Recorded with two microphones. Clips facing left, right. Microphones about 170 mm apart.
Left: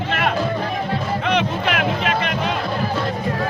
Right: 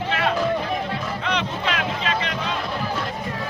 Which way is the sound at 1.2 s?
55° left (ahead or behind).